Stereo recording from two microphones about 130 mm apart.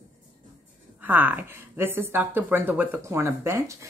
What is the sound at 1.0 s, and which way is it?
Speech, 15° right (ahead or behind).